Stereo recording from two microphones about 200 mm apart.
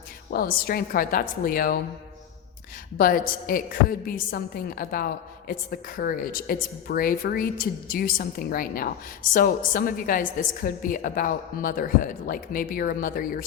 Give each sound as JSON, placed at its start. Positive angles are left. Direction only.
{"t": 0.3, "sound": "a woman's voice", "side_deg": 50}
{"t": 3.0, "sound": "a woman's voice", "side_deg": 45}